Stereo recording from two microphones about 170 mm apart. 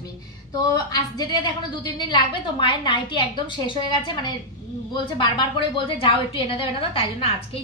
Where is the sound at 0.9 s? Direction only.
25° left (ahead or behind).